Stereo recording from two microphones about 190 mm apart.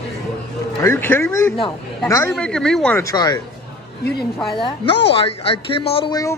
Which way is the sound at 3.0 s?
20° left (ahead or behind).